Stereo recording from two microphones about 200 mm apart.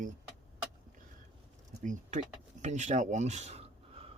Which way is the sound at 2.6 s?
35° right (ahead or behind).